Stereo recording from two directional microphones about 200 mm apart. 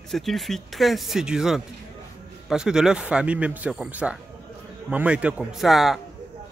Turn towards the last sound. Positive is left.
turn(degrees=0)  # may be behind; listen again after turning